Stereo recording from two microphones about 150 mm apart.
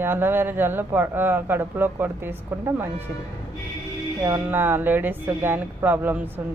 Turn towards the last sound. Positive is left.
turn(degrees=-10)  # may be behind; listen again after turning